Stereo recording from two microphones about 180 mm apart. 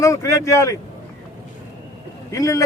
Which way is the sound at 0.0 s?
15° left (ahead or behind).